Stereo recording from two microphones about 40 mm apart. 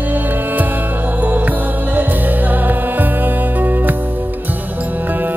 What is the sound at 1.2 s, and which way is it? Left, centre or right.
Music, right.